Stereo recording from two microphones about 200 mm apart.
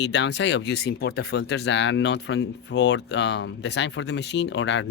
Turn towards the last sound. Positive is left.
turn(degrees=65)  # may be behind; listen again after turning